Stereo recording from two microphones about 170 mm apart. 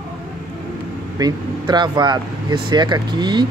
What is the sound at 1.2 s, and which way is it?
Speech, 25° right (ahead or behind).